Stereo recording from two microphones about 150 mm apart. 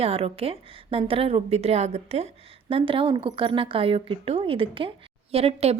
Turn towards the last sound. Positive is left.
turn(degrees=-40)  # may be behind; listen again after turning